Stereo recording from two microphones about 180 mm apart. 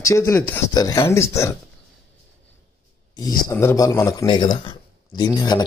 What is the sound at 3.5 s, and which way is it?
Speech, 15° left (ahead or behind).